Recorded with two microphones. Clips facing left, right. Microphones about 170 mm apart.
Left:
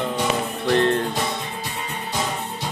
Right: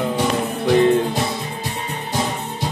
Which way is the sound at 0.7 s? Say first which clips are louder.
Right 5 dB; 10° right (ahead or behind).